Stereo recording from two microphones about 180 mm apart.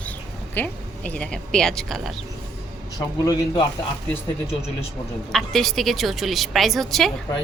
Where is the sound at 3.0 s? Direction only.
20° left (ahead or behind).